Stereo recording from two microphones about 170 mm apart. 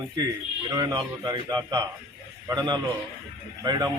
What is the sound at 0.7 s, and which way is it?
A man's voice, 20° right (ahead or behind).